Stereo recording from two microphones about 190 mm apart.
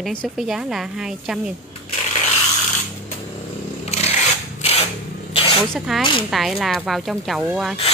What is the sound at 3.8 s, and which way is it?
Motorcycle, 35° left (ahead or behind).